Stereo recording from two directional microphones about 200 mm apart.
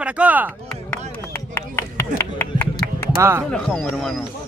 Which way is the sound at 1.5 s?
15° left (ahead or behind).